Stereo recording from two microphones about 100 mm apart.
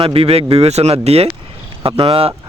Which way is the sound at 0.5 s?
90° right.